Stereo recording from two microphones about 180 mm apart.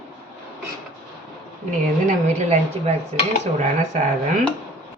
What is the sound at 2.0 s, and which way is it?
A woman's voice, 40° right (ahead or behind).